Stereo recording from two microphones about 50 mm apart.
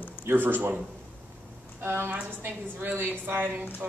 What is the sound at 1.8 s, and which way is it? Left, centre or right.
Speech, right.